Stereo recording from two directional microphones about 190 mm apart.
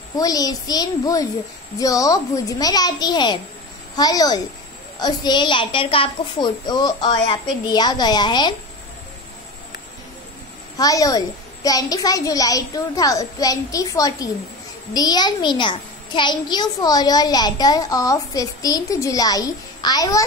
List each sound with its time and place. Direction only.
0.2 s a child's voice: 20° left (ahead or behind)
10.8 s a child's voice: 20° left (ahead or behind)